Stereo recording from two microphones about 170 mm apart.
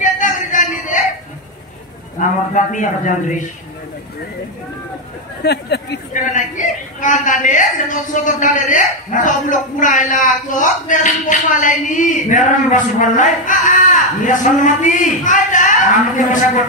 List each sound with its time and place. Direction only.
0.0 s a sound: 50° left (ahead or behind)
2.1 s a woman's voice: 45° left (ahead or behind)
5.4 s speech: 75° left (ahead or behind)
6.1 s a woman's voice: 50° left (ahead or behind)